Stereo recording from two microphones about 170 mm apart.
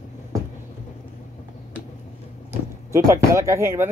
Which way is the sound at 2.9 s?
15° right (ahead or behind).